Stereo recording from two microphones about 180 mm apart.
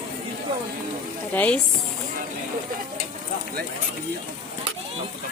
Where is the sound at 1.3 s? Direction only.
10° left (ahead or behind).